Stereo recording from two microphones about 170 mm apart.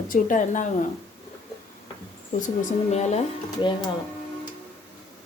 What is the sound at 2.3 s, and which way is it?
Speech, 50° left (ahead or behind).